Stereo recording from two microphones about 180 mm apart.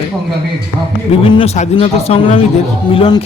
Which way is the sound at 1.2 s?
30° left (ahead or behind).